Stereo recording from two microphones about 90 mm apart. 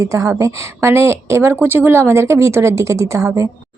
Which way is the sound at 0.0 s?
35° right (ahead or behind).